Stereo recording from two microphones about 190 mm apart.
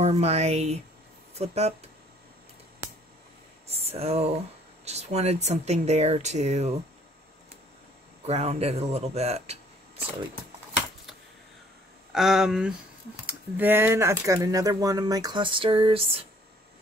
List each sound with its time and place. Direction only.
0.0 s speech: 35° right (ahead or behind)
2.8 s a sound: 15° right (ahead or behind)
3.7 s speech: 30° right (ahead or behind)
8.3 s speech: 35° right (ahead or behind)
12.1 s speech: centre (ahead or behind); by 16.3 s 30° right (ahead or behind)